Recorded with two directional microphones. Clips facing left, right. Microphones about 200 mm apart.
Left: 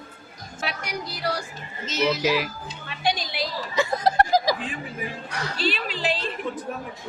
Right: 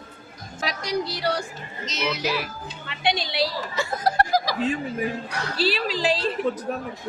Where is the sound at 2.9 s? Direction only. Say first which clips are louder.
Right 1 dB; 30° right (ahead or behind).